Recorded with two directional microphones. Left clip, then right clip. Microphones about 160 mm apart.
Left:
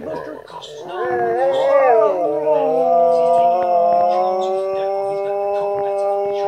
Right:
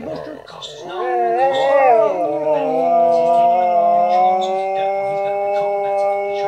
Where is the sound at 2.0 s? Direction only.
15° right (ahead or behind).